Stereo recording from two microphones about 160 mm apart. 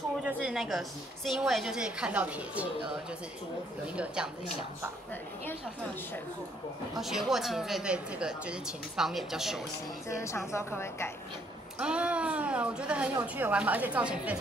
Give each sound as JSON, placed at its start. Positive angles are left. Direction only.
{"t": 0.2, "sound": "a woman's voice", "side_deg": -5}
{"t": 7.0, "sound": "a woman's voice", "side_deg": 0}
{"t": 10.0, "sound": "a woman's voice", "side_deg": 15}
{"t": 11.8, "sound": "a woman's voice", "side_deg": -5}